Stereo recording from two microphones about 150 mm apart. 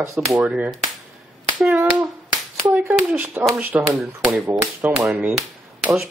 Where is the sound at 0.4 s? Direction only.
5° right (ahead or behind).